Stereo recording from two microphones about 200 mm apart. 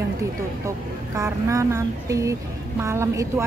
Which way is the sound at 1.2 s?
15° right (ahead or behind).